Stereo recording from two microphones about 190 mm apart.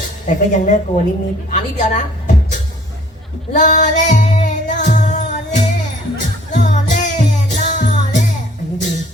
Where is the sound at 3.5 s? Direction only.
40° left (ahead or behind).